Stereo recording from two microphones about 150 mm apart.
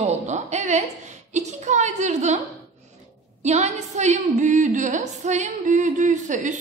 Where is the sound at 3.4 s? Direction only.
50° right (ahead or behind).